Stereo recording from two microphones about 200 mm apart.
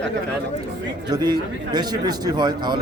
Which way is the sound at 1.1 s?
20° right (ahead or behind).